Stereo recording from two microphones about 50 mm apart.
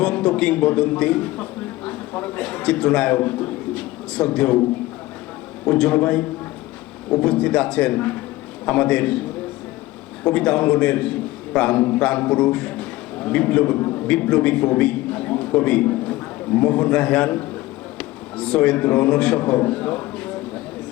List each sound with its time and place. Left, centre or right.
0.0 s a man's voice: centre
5.6 s a man's voice: left
7.9 s a man's voice: left
10.2 s a man's voice: left
11.8 s speech: left
12.3 s a man's voice: left
13.7 s a man's voice: left
14.1 s a man's voice: left
17.9 s a sound: centre
18.9 s a man's voice: left
19.5 s a sound: left